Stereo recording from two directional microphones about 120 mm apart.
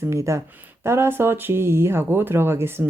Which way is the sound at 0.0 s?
25° right (ahead or behind).